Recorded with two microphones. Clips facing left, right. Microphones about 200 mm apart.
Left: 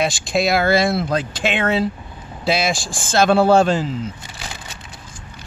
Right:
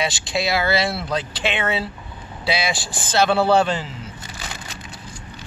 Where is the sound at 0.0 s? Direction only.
50° left (ahead or behind).